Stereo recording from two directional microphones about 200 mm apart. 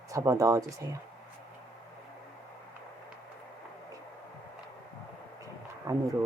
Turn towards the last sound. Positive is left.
turn(degrees=-15)  # may be behind; listen again after turning